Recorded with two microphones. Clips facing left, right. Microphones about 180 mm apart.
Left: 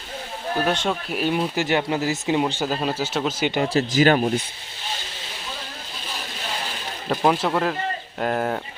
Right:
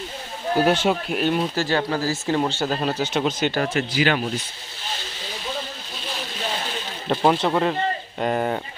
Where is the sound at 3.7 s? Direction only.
40° left (ahead or behind).